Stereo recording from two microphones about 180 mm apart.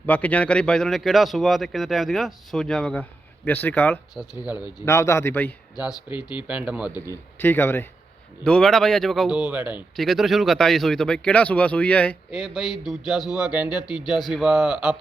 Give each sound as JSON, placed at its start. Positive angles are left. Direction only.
{"t": 0.0, "sound": "speech", "side_deg": 10}
{"t": 4.1, "sound": "speech", "side_deg": 0}
{"t": 4.5, "sound": "speech", "side_deg": 20}
{"t": 6.1, "sound": "speech", "side_deg": 25}
{"t": 6.5, "sound": "speech", "side_deg": -5}
{"t": 7.1, "sound": "speech", "side_deg": 10}